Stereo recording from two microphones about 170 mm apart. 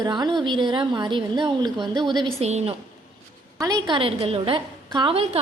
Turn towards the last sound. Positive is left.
turn(degrees=-35)  # may be behind; listen again after turning